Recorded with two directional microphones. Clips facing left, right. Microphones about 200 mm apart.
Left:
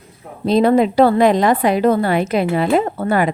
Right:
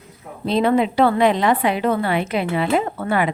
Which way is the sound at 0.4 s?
40° left (ahead or behind).